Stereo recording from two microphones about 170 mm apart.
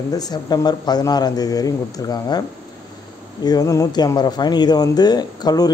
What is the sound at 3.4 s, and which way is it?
Speech, 20° left (ahead or behind).